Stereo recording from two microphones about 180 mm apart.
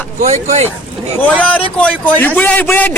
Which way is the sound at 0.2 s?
40° right (ahead or behind).